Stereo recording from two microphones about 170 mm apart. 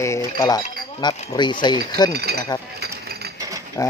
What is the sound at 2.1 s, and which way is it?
Speech, 70° right (ahead or behind).